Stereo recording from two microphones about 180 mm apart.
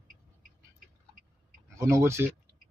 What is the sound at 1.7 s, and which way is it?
Speech, 15° right (ahead or behind).